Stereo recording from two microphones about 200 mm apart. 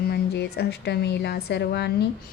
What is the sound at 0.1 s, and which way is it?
A woman's voice, 55° left (ahead or behind).